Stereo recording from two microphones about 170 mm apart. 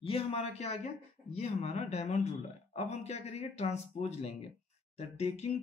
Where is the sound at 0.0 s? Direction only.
35° left (ahead or behind).